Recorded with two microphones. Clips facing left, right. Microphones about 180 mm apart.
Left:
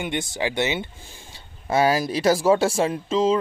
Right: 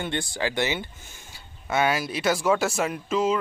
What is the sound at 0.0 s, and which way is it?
Speech, 20° left (ahead or behind).